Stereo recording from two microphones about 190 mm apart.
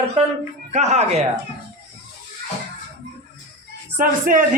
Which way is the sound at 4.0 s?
45° right (ahead or behind).